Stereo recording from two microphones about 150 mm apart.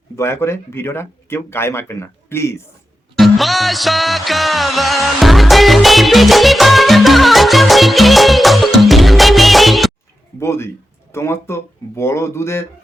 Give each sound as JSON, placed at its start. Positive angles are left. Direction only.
{"t": 0.2, "sound": "speech", "side_deg": 15}
{"t": 3.2, "sound": "music", "side_deg": 0}
{"t": 10.4, "sound": "speech", "side_deg": 15}